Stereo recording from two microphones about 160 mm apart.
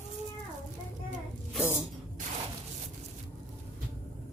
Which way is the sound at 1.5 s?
10° right (ahead or behind).